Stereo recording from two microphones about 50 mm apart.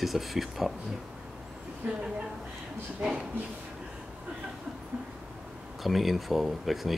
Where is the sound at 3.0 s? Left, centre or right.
Centre.